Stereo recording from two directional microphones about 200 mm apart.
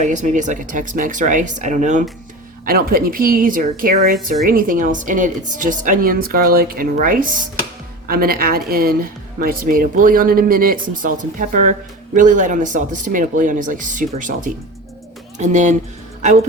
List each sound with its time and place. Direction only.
0.0 s speech: 40° right (ahead or behind)